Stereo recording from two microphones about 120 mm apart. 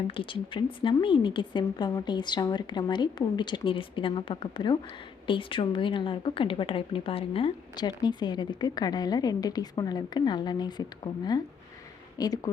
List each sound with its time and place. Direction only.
0.1 s a woman's voice: 45° left (ahead or behind)
7.8 s a woman's voice: 35° left (ahead or behind)